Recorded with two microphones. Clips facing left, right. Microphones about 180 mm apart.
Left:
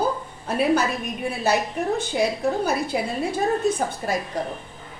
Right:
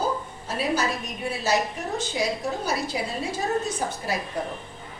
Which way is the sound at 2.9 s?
55° left (ahead or behind).